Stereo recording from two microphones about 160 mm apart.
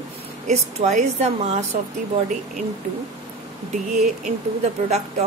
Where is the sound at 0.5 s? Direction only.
45° right (ahead or behind).